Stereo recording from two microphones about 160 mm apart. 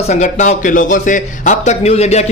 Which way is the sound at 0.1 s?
50° left (ahead or behind).